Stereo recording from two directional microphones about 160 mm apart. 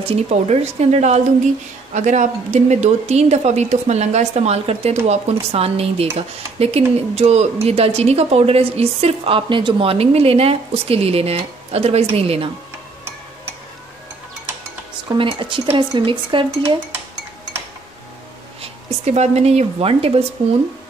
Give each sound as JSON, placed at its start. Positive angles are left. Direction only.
{"t": 0.0, "sound": "a woman's voice", "side_deg": -40}
{"t": 15.1, "sound": "speech", "side_deg": -30}
{"t": 18.6, "sound": "speech", "side_deg": -45}